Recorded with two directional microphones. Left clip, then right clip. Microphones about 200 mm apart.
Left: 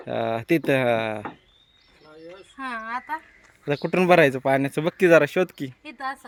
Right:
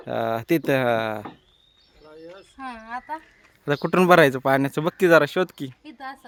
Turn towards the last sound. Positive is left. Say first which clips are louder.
# left 1 dB
turn(degrees=0)  # may be behind; listen again after turning